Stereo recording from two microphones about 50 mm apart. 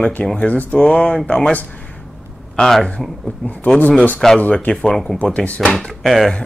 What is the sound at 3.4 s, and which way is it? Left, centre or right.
Speech, left.